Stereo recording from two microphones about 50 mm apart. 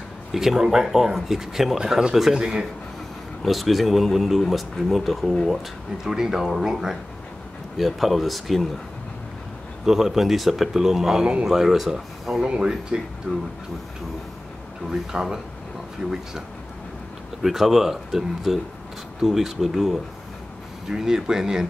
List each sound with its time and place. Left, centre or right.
0.3 s speech: centre
3.4 s speech: centre
9.8 s speech: centre
12.4 s speech: centre
14.9 s speech: centre
17.4 s speech: centre